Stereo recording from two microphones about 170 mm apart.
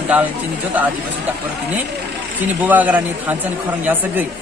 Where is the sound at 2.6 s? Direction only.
10° right (ahead or behind).